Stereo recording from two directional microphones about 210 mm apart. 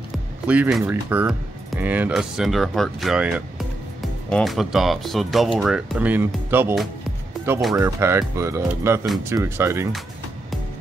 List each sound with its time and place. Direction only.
0.5 s speech: 5° right (ahead or behind)